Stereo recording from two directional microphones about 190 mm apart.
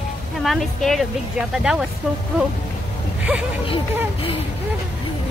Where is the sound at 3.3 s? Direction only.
Centre (ahead or behind).